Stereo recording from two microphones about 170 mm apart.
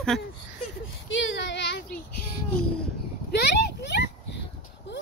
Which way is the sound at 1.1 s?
90° left.